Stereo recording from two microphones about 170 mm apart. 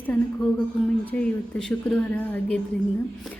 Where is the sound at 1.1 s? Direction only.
5° left (ahead or behind).